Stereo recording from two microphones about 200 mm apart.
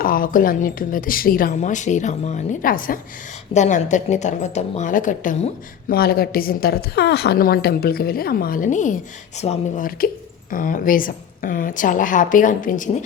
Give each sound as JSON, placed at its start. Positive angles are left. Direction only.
{"t": 0.0, "sound": "a woman's voice", "side_deg": 45}